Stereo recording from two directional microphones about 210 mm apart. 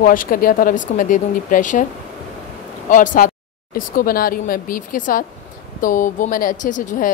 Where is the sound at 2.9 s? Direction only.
40° left (ahead or behind).